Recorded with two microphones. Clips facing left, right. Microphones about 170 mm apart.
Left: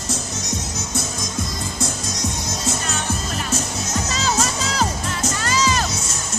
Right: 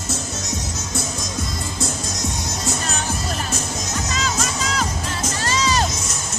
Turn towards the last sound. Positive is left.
turn(degrees=-30)  # may be behind; listen again after turning